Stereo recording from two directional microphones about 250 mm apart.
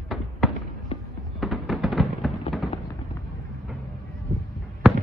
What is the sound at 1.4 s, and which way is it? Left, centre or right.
Music, centre.